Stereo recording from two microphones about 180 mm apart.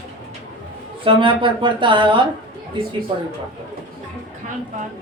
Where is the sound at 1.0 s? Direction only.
30° right (ahead or behind).